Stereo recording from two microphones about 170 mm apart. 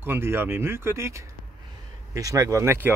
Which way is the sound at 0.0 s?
15° right (ahead or behind).